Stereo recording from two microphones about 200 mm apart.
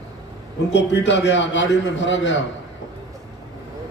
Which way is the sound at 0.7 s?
65° left (ahead or behind).